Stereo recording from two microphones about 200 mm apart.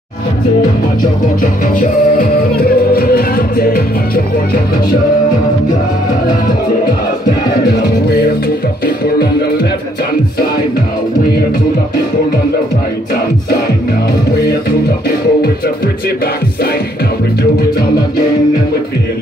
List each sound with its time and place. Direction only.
1.4 s music: 45° left (ahead or behind)
7.6 s music: 55° left (ahead or behind)
14.3 s music: 55° left (ahead or behind)